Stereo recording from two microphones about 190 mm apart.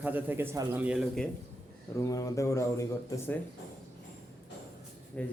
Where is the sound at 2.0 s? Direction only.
15° left (ahead or behind).